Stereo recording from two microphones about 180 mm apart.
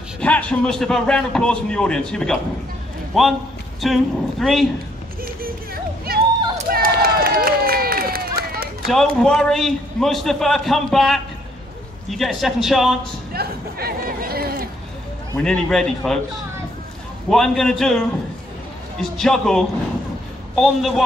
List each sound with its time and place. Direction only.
0.2 s a man's voice: 5° left (ahead or behind)
6.1 s a sound: 55° right (ahead or behind)
6.7 s run: 55° right (ahead or behind)
8.8 s a man's voice: 5° left (ahead or behind)
13.3 s chatter: 60° right (ahead or behind)
15.3 s a man's voice: 5° left (ahead or behind)
17.3 s a man's voice: centre (ahead or behind)
18.9 s a man's voice: 5° left (ahead or behind)